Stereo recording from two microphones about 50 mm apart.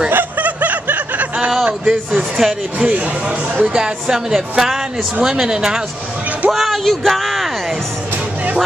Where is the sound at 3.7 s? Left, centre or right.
Centre.